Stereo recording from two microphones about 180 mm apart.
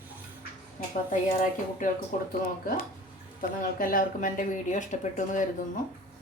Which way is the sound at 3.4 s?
50° left (ahead or behind).